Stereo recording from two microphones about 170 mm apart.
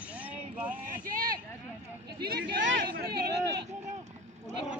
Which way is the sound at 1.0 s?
55° right (ahead or behind).